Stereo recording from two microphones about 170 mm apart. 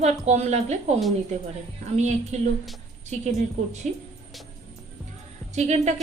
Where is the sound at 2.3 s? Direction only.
40° right (ahead or behind).